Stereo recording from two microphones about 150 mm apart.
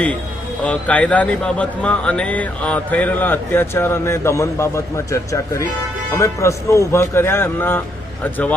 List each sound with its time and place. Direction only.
0.6 s speech: 10° left (ahead or behind)